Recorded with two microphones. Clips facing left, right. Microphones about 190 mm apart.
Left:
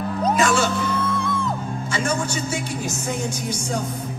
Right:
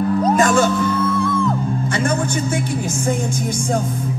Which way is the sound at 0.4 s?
45° right (ahead or behind).